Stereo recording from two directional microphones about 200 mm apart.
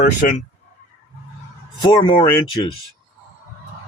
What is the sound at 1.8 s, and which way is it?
Speech, 25° left (ahead or behind).